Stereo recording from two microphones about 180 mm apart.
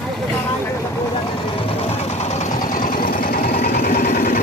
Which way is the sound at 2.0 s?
40° left (ahead or behind).